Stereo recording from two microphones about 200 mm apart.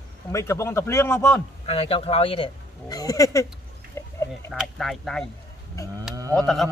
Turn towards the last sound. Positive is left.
turn(degrees=0)  # may be behind; listen again after turning